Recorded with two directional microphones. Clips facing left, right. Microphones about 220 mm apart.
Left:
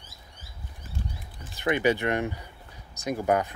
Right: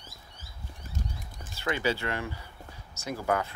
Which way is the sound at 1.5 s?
15° left (ahead or behind).